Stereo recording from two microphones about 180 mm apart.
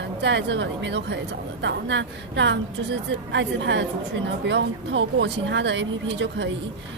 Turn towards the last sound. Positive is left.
turn(degrees=-85)